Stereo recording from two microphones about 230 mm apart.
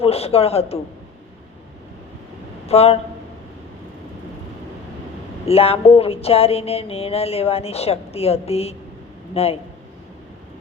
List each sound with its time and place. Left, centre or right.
0.0 s speech: left
2.6 s speech: left
5.5 s speech: left